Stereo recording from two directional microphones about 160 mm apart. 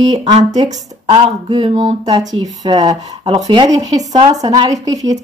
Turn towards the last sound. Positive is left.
turn(degrees=-20)  # may be behind; listen again after turning